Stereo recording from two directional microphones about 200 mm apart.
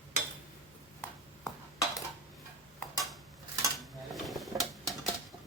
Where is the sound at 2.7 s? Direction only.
Centre (ahead or behind).